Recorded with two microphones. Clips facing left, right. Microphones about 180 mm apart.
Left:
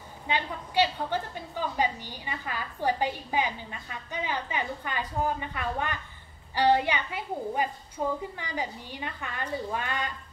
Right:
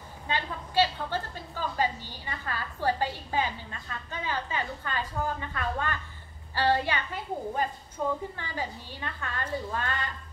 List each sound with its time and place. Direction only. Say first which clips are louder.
0.3 s a woman's voice: left 2 dB; 15° left (ahead or behind)